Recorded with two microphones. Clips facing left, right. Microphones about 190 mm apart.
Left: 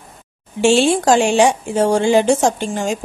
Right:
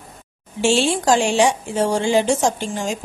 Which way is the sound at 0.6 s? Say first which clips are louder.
Left 5 dB; 55° left (ahead or behind).